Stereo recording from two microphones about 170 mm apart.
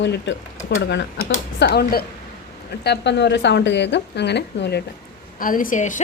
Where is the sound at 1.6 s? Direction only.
70° left (ahead or behind).